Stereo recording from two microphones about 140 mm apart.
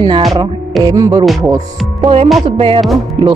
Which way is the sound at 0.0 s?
30° right (ahead or behind).